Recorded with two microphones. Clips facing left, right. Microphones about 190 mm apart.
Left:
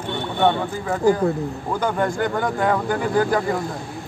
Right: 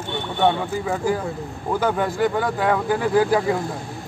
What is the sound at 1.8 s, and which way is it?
Speech, 5° right (ahead or behind).